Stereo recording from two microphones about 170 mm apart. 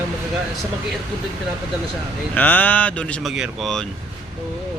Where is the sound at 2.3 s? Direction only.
10° left (ahead or behind).